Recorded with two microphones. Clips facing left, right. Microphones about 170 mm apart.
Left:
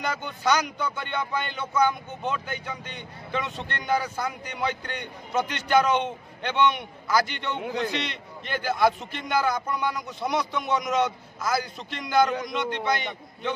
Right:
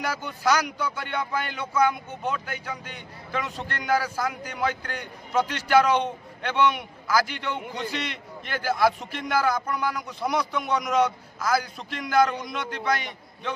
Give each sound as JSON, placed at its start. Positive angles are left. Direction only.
{"t": 0.0, "sound": "speech", "side_deg": -5}